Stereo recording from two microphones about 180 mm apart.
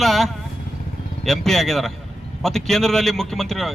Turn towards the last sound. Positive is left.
turn(degrees=0)  # may be behind; listen again after turning